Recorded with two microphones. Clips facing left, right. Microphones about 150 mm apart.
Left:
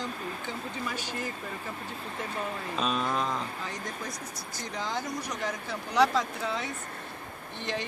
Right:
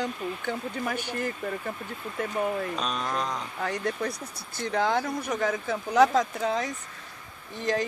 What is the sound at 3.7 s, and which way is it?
Speech, 65° right (ahead or behind).